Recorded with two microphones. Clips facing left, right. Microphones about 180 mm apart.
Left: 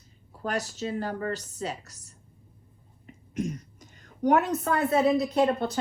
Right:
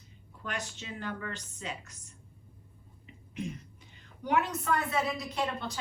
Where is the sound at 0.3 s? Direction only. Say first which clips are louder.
Left 8 dB; 35° left (ahead or behind).